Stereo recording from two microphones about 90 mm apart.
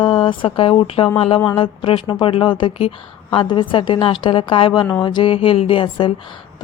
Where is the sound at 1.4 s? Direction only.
65° left (ahead or behind).